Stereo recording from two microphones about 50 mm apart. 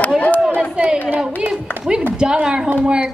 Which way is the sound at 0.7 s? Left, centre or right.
Right.